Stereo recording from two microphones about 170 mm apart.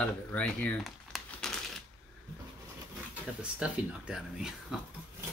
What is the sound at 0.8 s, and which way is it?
Crumpling, centre (ahead or behind).